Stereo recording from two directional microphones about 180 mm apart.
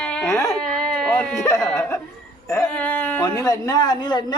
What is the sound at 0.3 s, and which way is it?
Speech, 15° left (ahead or behind).